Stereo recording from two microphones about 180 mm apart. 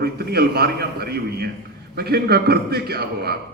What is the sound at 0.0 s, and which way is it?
A man's voice, 60° right (ahead or behind).